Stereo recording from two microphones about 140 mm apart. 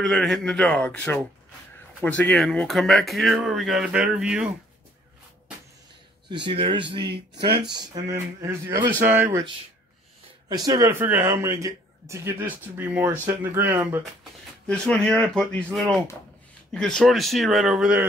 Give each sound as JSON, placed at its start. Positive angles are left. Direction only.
{"t": 0.0, "sound": "speech", "side_deg": 0}
{"t": 6.2, "sound": "speech", "side_deg": -35}
{"t": 10.5, "sound": "speech", "side_deg": -25}
{"t": 14.7, "sound": "speech", "side_deg": 5}